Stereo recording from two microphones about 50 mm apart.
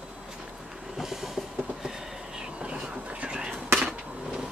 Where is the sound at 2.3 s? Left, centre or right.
Right.